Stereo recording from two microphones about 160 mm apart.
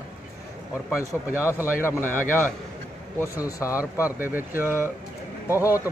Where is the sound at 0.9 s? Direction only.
15° left (ahead or behind).